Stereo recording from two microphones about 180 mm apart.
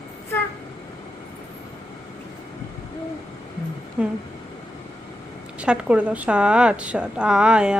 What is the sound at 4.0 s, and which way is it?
Speech, 5° right (ahead or behind).